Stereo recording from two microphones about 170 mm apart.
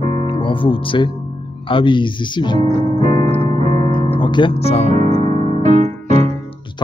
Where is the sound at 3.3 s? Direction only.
40° right (ahead or behind).